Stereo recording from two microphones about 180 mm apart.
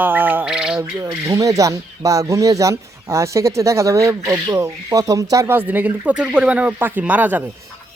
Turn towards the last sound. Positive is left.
turn(degrees=-10)  # may be behind; listen again after turning